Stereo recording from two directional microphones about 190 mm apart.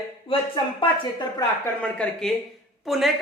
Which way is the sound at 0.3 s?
25° left (ahead or behind).